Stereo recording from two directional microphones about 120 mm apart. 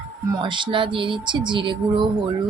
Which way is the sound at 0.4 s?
40° right (ahead or behind).